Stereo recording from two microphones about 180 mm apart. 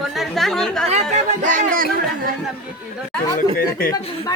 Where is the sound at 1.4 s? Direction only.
45° right (ahead or behind).